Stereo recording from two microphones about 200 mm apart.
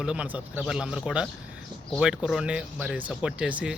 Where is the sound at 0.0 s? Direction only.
5° right (ahead or behind).